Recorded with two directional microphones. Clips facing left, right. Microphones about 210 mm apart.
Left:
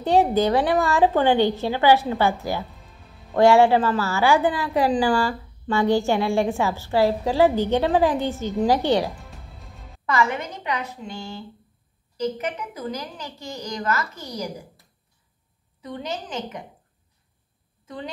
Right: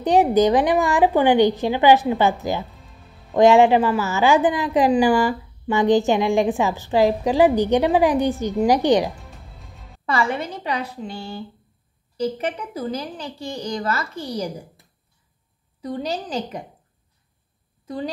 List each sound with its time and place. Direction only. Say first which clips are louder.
0.0 s a woman's voice: right 3 dB; 15° right (ahead or behind)
9.2 s music: even; centre (ahead or behind)
10.0 s a woman's voice: right 1 dB; 30° right (ahead or behind)
15.8 s a woman's voice: right 5 dB; 35° right (ahead or behind)
17.8 s a woman's voice: right 6 dB; 35° right (ahead or behind)